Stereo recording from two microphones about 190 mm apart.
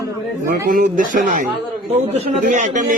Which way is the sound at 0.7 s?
45° right (ahead or behind).